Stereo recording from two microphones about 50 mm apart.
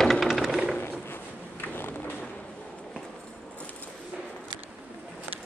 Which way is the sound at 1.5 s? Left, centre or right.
Left.